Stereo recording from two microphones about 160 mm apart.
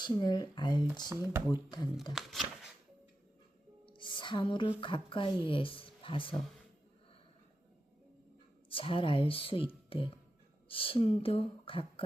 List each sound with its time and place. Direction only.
0.0 s speech: 25° left (ahead or behind)
2.1 s speech: centre (ahead or behind)
3.8 s a sound: 30° left (ahead or behind)
4.8 s speech: 30° left (ahead or behind)
8.7 s speech: 35° left (ahead or behind)